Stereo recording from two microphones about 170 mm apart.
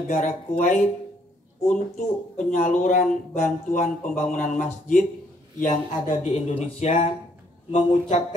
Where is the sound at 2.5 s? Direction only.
45° left (ahead or behind).